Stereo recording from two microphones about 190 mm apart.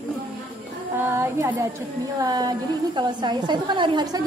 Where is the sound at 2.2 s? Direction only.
20° right (ahead or behind).